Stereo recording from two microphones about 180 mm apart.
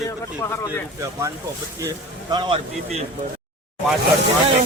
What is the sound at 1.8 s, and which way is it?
A man's voice, 25° right (ahead or behind).